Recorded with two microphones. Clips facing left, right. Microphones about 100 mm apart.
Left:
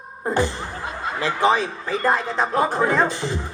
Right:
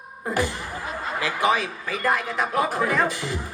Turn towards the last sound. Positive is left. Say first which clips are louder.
# left 3 dB
turn(degrees=30)  # may be behind; listen again after turning